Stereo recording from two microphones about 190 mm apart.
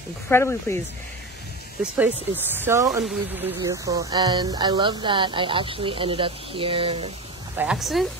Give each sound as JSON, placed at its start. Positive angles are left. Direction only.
{"t": 0.3, "sound": "speech", "side_deg": 15}
{"t": 1.8, "sound": "speech", "side_deg": -10}
{"t": 7.5, "sound": "speech", "side_deg": -5}